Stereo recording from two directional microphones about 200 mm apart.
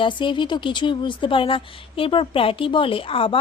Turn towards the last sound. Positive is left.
turn(degrees=25)  # may be behind; listen again after turning